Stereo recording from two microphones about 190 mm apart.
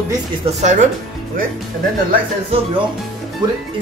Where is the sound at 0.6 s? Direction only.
40° right (ahead or behind).